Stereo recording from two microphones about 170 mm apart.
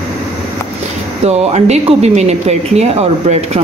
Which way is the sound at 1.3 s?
40° right (ahead or behind).